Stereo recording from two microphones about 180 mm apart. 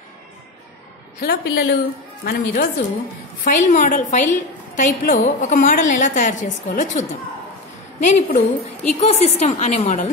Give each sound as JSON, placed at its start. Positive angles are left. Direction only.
{"t": 1.2, "sound": "a woman's voice", "side_deg": 60}
{"t": 2.2, "sound": "a woman's voice", "side_deg": 55}
{"t": 3.4, "sound": "a woman's voice", "side_deg": 45}